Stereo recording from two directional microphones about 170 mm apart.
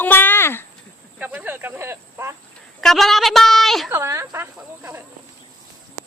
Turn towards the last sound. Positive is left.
turn(degrees=-10)  # may be behind; listen again after turning